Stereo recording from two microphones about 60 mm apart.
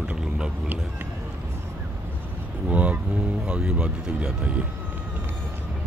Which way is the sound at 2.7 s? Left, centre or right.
Right.